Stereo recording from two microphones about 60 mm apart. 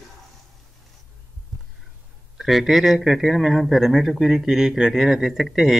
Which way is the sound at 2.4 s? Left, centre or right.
Centre.